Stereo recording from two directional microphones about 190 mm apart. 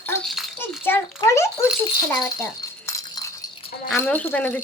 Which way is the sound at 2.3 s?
15° left (ahead or behind).